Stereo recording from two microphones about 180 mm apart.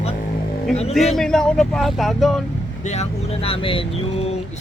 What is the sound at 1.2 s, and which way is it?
Speech, 5° left (ahead or behind).